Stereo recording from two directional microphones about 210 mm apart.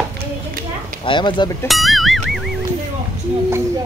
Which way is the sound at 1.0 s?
20° left (ahead or behind).